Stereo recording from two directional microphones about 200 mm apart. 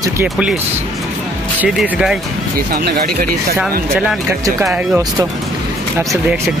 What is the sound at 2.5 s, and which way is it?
Speech, 45° right (ahead or behind).